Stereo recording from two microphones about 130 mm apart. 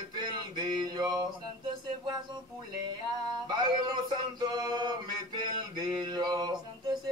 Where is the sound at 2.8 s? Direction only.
35° right (ahead or behind).